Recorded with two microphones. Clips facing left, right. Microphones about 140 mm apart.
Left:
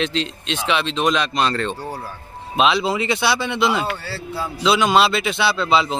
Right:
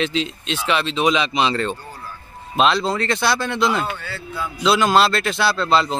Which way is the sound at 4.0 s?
35° left (ahead or behind).